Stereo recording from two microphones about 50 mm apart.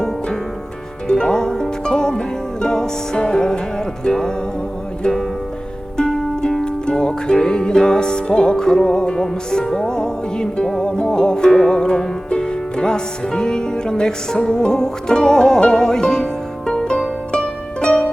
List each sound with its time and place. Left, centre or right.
1.0 s music: centre
6.0 s music: centre